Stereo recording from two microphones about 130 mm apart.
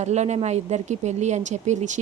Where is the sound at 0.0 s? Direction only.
60° right (ahead or behind).